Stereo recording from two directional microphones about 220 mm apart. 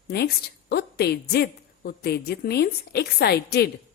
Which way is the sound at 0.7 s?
45° left (ahead or behind).